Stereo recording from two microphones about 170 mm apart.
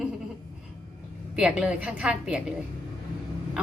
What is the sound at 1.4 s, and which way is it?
A woman's voice, 5° right (ahead or behind).